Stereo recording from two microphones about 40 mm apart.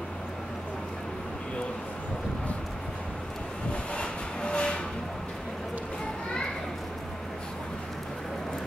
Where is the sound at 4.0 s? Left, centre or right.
Left.